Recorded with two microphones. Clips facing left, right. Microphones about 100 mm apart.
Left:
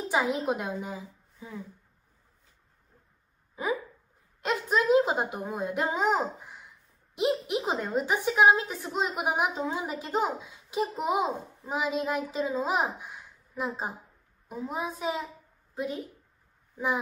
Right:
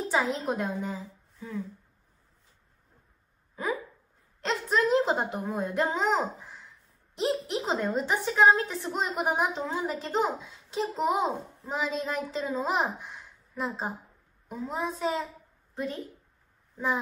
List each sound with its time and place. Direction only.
0.1 s a woman's voice: 15° left (ahead or behind)
4.4 s a sound: 10° left (ahead or behind)
7.7 s a woman's voice: 10° left (ahead or behind)